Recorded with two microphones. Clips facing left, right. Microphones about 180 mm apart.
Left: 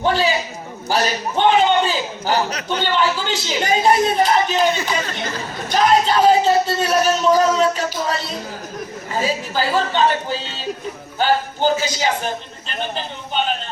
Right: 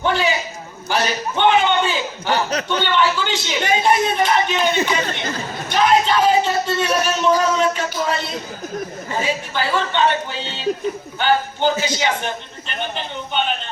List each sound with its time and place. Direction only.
0.0 s a man's voice: 35° left (ahead or behind)
0.9 s a sound: 35° left (ahead or behind)
2.6 s a man's voice: 40° left (ahead or behind)
5.6 s a man's voice: 40° left (ahead or behind)
9.2 s a man's voice: 35° left (ahead or behind)